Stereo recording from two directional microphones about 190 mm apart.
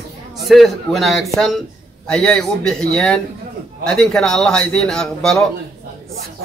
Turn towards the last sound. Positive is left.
turn(degrees=5)  # may be behind; listen again after turning